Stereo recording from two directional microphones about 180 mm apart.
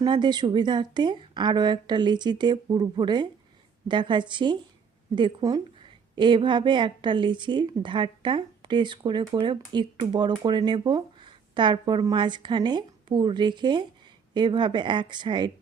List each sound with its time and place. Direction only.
0.0 s a woman's voice: 25° right (ahead or behind)